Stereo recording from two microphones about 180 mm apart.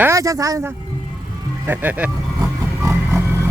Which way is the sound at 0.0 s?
15° right (ahead or behind).